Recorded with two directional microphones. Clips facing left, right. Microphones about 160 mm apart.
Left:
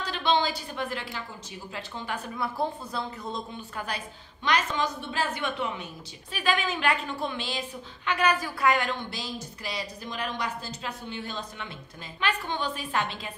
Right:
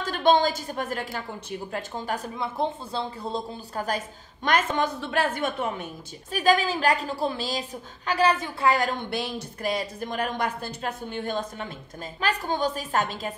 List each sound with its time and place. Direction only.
0.0 s a woman's voice: 45° right (ahead or behind)
2.3 s a woman's voice: 20° right (ahead or behind); by 9.0 s 40° right (ahead or behind)
9.1 s a woman's voice: 55° right (ahead or behind)